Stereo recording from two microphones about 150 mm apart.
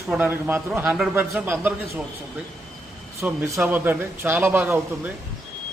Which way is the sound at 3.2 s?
10° right (ahead or behind).